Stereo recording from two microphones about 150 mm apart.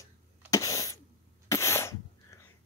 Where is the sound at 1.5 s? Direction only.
20° left (ahead or behind).